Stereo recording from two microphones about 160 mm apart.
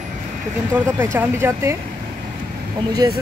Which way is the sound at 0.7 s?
15° right (ahead or behind).